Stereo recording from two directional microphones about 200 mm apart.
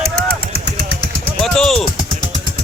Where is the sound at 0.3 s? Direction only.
50° right (ahead or behind).